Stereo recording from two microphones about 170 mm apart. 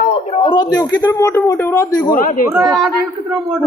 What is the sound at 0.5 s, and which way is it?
A man's voice, 20° left (ahead or behind).